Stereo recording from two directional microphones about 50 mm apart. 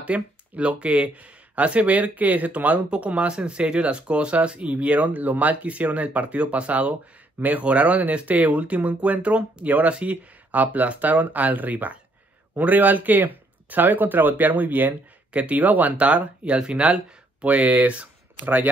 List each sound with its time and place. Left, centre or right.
0.0 s speech: right